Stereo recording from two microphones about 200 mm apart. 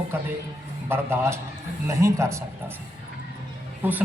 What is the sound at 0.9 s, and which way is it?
Speech, 10° right (ahead or behind).